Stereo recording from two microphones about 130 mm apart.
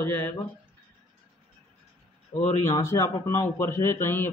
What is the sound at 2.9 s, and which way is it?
A man's voice, 20° left (ahead or behind).